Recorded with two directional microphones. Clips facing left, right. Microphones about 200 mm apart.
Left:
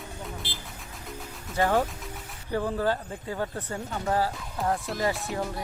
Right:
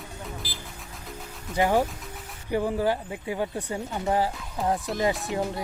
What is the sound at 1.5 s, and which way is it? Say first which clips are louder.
Speech: right 2 dB; 15° right (ahead or behind).